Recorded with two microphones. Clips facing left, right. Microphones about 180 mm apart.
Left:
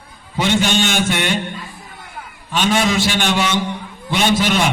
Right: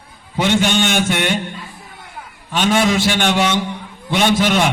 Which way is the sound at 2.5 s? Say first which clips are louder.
Right 2 dB; 55° right (ahead or behind).